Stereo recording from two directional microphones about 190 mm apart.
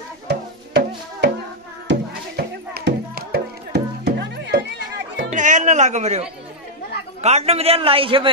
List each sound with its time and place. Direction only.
0.3 s music: 60° right (ahead or behind)
5.3 s music: 40° right (ahead or behind)
7.2 s a man's voice: 35° right (ahead or behind)